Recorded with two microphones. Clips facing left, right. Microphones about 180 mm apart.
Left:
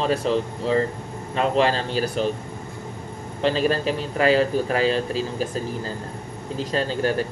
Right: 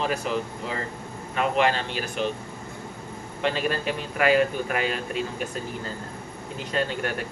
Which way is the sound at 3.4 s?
30° left (ahead or behind).